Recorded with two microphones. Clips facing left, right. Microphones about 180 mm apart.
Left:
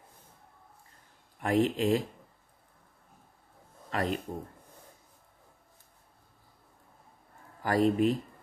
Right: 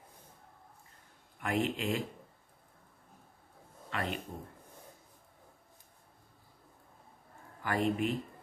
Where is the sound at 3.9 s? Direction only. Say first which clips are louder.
Left 6 dB; 40° left (ahead or behind).